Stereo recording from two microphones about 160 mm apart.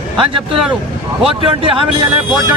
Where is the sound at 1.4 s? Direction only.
35° right (ahead or behind).